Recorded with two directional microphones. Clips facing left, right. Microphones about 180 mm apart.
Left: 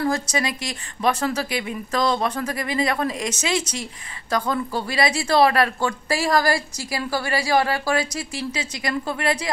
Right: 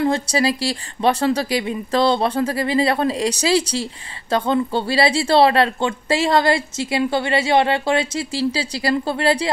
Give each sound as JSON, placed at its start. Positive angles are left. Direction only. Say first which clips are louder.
{"t": 0.0, "sound": "speech", "louder": "right 5 dB", "side_deg": -30}